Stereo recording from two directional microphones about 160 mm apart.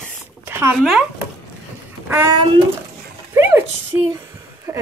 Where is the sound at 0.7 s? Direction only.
Centre (ahead or behind).